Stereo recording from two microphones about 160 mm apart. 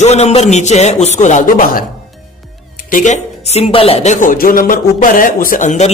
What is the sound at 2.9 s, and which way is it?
Speech, 50° left (ahead or behind).